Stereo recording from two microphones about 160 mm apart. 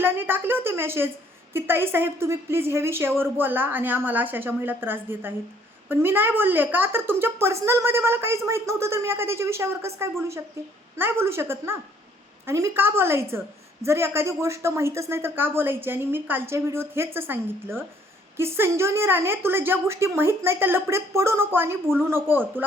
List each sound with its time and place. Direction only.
0.0 s a woman's voice: 15° right (ahead or behind)